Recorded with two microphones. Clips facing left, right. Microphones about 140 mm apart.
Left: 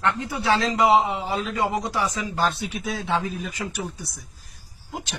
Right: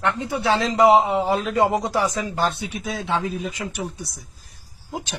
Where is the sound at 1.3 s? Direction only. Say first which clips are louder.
Right 5 dB; 55° right (ahead or behind).